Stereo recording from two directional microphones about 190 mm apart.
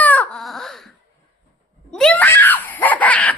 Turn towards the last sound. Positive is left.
turn(degrees=5)  # may be behind; listen again after turning